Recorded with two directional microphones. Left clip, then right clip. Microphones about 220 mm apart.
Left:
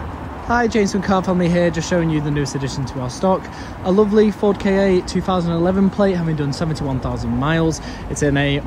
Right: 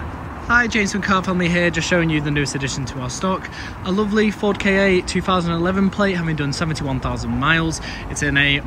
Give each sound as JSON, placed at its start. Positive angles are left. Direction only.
{"t": 0.5, "sound": "speech", "side_deg": 25}